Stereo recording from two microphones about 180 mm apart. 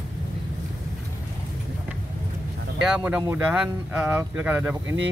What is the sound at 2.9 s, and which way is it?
Speech, 10° right (ahead or behind).